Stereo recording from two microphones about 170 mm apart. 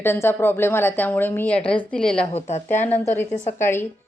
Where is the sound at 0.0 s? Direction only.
15° left (ahead or behind).